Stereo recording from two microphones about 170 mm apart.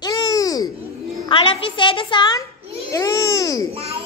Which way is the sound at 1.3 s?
30° left (ahead or behind).